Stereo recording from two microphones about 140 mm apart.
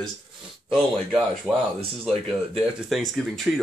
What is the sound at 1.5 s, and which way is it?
Speech, 5° right (ahead or behind).